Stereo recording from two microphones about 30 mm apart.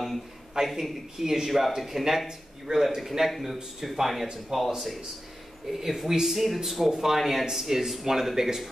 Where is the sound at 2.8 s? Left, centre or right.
Centre.